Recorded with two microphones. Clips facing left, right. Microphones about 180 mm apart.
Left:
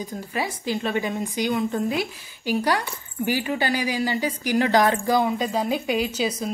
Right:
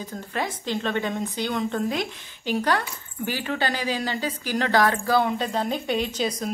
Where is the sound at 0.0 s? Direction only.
10° left (ahead or behind).